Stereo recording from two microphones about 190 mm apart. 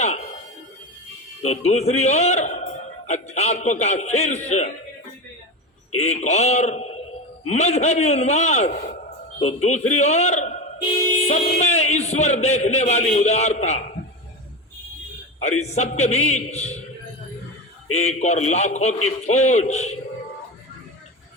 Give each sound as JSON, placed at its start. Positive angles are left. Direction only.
{"t": 0.0, "sound": "a sound", "side_deg": 35}
{"t": 1.5, "sound": "a man's voice", "side_deg": 35}
{"t": 6.0, "sound": "a man's voice", "side_deg": 35}
{"t": 15.4, "sound": "a man's voice", "side_deg": 35}
{"t": 17.9, "sound": "a man's voice", "side_deg": 35}